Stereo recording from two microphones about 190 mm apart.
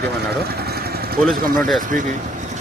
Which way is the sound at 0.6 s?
55° right (ahead or behind).